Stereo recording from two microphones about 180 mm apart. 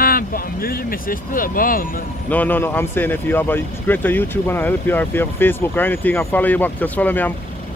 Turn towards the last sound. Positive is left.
turn(degrees=10)  # may be behind; listen again after turning